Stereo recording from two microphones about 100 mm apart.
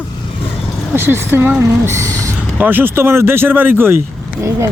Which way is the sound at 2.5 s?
20° right (ahead or behind).